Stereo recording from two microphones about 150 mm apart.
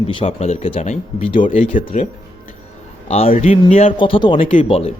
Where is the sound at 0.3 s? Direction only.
45° left (ahead or behind).